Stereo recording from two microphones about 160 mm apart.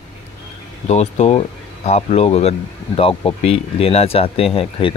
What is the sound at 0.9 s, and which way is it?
Speech, 40° left (ahead or behind).